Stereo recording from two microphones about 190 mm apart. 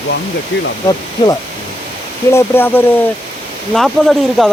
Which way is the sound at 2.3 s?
10° left (ahead or behind).